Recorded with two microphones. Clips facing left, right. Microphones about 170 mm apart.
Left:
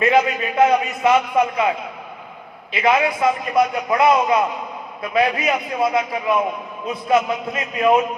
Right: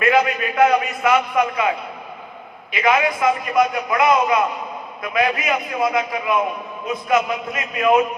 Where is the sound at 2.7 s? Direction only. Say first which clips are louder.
Left 1 dB; 30° left (ahead or behind).